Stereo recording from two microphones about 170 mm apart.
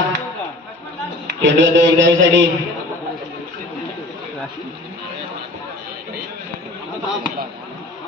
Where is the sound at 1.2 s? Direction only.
90° right.